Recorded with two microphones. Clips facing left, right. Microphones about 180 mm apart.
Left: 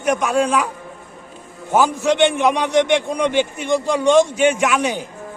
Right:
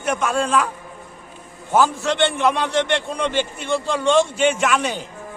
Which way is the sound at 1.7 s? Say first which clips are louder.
Left 2 dB; 15° left (ahead or behind).